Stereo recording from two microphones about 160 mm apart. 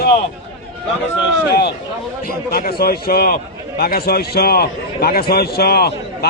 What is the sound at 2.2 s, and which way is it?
A man's voice, 70° left (ahead or behind).